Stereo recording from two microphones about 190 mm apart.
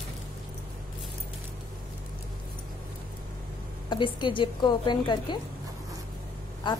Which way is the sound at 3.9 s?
25° left (ahead or behind).